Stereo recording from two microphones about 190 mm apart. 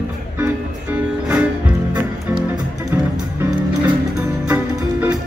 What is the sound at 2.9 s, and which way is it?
Music, 10° right (ahead or behind).